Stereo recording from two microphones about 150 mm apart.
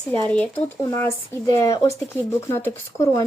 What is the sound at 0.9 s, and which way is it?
Speech, 20° left (ahead or behind).